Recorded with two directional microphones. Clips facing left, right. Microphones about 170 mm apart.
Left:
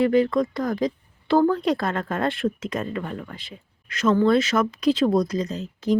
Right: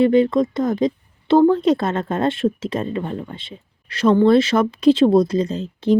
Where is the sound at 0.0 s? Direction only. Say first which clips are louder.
Right 4 dB; 25° right (ahead or behind).